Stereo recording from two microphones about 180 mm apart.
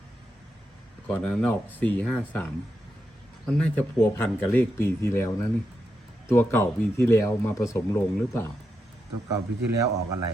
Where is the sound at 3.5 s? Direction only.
5° left (ahead or behind).